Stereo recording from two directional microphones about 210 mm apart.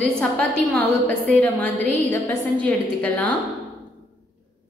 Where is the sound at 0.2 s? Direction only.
5° left (ahead or behind).